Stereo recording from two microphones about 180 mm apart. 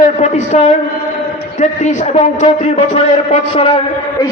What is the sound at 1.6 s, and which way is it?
A man's voice, 40° left (ahead or behind).